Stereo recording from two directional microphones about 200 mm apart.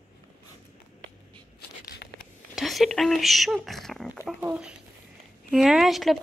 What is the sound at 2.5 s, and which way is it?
Speech, centre (ahead or behind).